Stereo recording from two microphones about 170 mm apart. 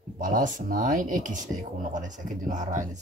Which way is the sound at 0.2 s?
50° right (ahead or behind).